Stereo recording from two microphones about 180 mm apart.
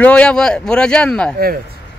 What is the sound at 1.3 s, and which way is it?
Speech, 55° right (ahead or behind).